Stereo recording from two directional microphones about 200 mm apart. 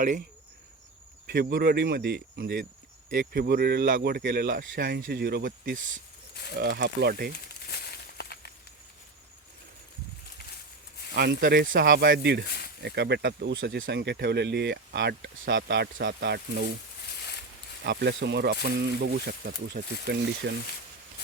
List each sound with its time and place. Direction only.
1.3 s speech: 55° right (ahead or behind)
4.8 s speech: 60° right (ahead or behind)
7.3 s a sound: 55° left (ahead or behind)
11.1 s speech: 50° right (ahead or behind)
17.8 s speech: 55° right (ahead or behind)